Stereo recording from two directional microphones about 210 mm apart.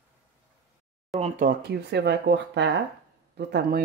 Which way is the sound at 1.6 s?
55° right (ahead or behind).